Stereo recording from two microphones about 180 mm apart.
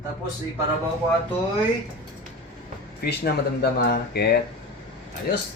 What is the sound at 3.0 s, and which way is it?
Speech, 60° left (ahead or behind).